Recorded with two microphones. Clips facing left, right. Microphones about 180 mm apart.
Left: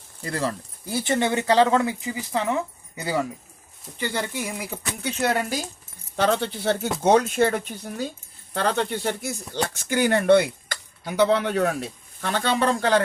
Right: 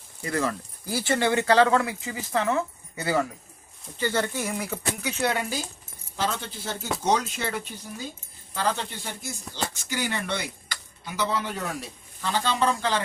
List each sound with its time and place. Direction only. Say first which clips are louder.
0.9 s speech: left 1 dB; 20° left (ahead or behind)
5.2 s speech: left 3 dB; 45° left (ahead or behind)
6.1 s speech: left 7 dB; 65° left (ahead or behind)